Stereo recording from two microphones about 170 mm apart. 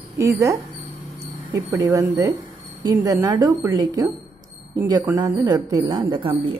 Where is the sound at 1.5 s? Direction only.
20° right (ahead or behind).